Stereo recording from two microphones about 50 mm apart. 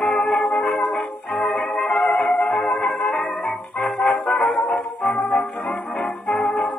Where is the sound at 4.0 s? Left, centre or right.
Centre.